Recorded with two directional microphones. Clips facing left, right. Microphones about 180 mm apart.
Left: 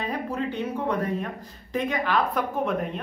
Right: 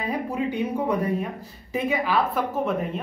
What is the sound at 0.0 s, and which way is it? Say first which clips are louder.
Speech: right 2 dB; 10° right (ahead or behind).